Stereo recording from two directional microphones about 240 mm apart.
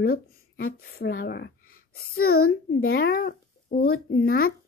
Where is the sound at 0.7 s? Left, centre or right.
Left.